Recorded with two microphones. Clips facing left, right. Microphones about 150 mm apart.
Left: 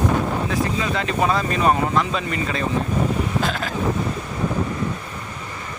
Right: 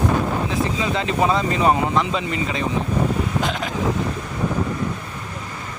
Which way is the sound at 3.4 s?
20° right (ahead or behind).